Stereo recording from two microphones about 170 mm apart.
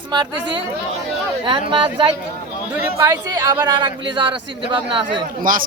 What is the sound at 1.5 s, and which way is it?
Speech, 30° right (ahead or behind).